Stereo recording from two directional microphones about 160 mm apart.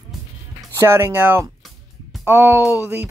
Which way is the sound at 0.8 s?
15° right (ahead or behind).